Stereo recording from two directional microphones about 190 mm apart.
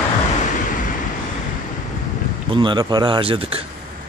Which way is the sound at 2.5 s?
25° right (ahead or behind).